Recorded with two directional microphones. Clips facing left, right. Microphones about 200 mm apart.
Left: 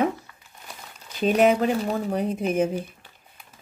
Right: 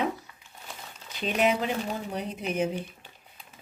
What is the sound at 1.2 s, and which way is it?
Speech, 45° left (ahead or behind).